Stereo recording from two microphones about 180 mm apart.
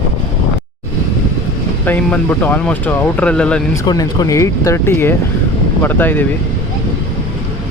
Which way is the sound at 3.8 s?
20° left (ahead or behind).